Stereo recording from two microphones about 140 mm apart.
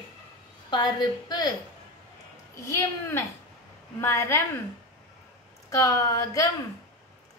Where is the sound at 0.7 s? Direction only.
30° left (ahead or behind).